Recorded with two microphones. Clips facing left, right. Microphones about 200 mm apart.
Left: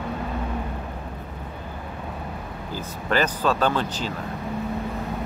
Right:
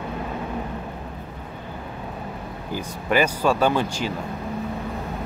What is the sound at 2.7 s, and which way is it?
Speech, 10° right (ahead or behind).